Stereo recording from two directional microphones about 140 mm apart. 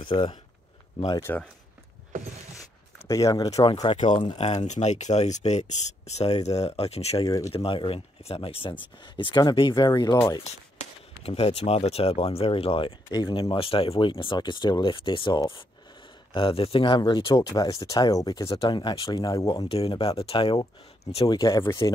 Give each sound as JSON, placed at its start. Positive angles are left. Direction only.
{"t": 0.0, "sound": "speech", "side_deg": 35}
{"t": 1.2, "sound": "speech", "side_deg": 10}
{"t": 3.1, "sound": "speech", "side_deg": 25}
{"t": 4.4, "sound": "speech", "side_deg": 50}
{"t": 10.8, "sound": "speech", "side_deg": 45}
{"t": 21.3, "sound": "speech", "side_deg": 25}